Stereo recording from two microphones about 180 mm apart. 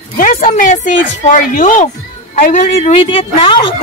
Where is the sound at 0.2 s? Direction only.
45° left (ahead or behind).